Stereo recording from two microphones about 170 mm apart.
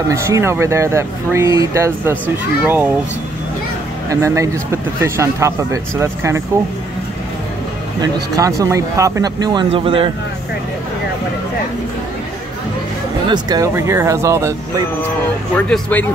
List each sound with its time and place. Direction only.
0.1 s speech: 15° right (ahead or behind)
4.1 s speech: 15° right (ahead or behind)
8.0 s speech: 20° right (ahead or behind)
13.3 s speech: 20° right (ahead or behind)
15.5 s speech: 10° left (ahead or behind)